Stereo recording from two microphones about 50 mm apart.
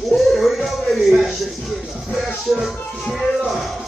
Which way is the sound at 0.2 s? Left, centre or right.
Centre.